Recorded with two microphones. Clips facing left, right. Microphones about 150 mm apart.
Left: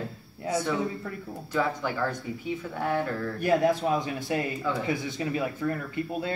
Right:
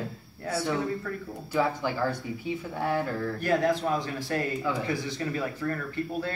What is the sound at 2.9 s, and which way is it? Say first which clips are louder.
Speech: even; 15° left (ahead or behind).